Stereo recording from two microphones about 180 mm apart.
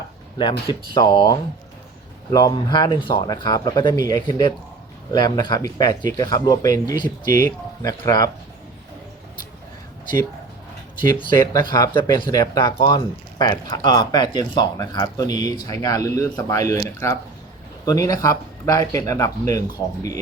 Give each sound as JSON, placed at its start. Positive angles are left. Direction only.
{"t": 0.9, "sound": "speech", "side_deg": 25}
{"t": 11.0, "sound": "speech", "side_deg": 20}